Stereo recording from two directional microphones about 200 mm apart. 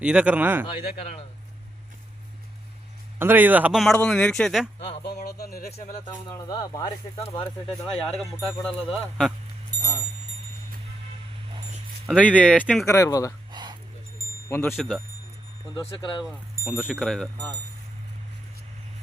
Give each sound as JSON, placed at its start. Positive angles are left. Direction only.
{"t": 0.0, "sound": "speech", "side_deg": -5}
{"t": 0.9, "sound": "speech", "side_deg": 30}
{"t": 3.2, "sound": "a man's voice", "side_deg": -10}
{"t": 5.0, "sound": "speech", "side_deg": 55}
{"t": 5.7, "sound": "speech", "side_deg": 35}
{"t": 6.5, "sound": "speech", "side_deg": 20}
{"t": 7.9, "sound": "a man's voice", "side_deg": 5}
{"t": 12.0, "sound": "a man's voice", "side_deg": 5}
{"t": 13.5, "sound": "a sound", "side_deg": -20}
{"t": 14.5, "sound": "speech", "side_deg": 10}
{"t": 14.8, "sound": "a man's voice", "side_deg": 0}
{"t": 15.7, "sound": "speech", "side_deg": 25}
{"t": 16.2, "sound": "a man's voice", "side_deg": -5}